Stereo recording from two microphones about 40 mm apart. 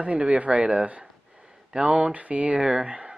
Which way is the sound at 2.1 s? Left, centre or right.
Right.